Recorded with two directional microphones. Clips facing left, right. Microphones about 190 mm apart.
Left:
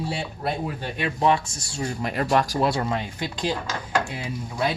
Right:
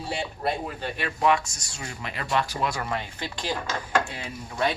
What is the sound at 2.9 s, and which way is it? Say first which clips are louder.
Speech: left 3 dB; 15° left (ahead or behind).